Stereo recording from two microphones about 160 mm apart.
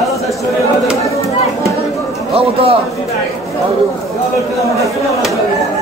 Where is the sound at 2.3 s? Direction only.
35° right (ahead or behind).